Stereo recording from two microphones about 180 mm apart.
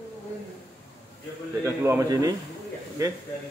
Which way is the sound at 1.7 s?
15° right (ahead or behind).